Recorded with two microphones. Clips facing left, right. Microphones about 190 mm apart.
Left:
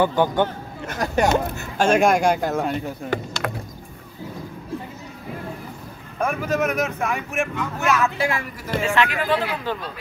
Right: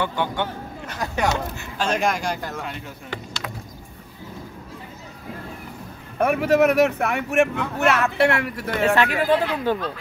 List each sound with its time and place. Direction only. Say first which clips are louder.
0.0 s speech: left 6 dB; 45° left (ahead or behind)
6.2 s speech: right 5 dB; 65° right (ahead or behind)
8.9 s speech: left 2 dB; 40° right (ahead or behind)